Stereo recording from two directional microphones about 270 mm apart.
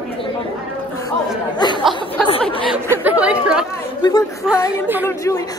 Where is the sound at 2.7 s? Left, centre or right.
Centre.